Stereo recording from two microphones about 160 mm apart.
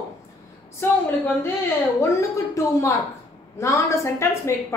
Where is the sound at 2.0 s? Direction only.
20° left (ahead or behind).